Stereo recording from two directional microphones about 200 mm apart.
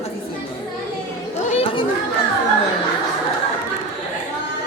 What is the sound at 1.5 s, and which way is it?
Chatter, 25° left (ahead or behind).